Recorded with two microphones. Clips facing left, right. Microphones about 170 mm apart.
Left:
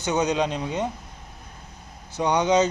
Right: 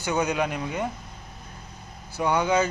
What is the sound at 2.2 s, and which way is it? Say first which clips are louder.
Speech: left 2 dB; 20° left (ahead or behind).